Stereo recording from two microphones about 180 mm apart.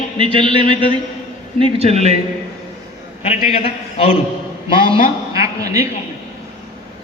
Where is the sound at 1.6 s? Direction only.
30° right (ahead or behind).